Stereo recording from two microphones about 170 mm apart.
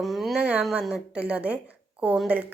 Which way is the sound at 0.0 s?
Centre (ahead or behind).